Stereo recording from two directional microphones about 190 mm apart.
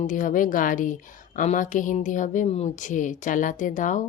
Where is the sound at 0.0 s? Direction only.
45° left (ahead or behind).